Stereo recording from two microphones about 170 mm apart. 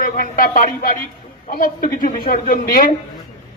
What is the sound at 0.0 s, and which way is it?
A man's voice, 55° left (ahead or behind).